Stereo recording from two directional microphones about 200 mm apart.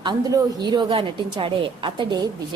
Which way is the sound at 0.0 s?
20° right (ahead or behind).